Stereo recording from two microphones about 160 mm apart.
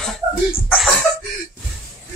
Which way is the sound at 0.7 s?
5° left (ahead or behind).